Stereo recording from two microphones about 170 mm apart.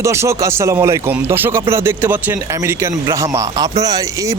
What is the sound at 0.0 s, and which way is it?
Speech, 15° right (ahead or behind).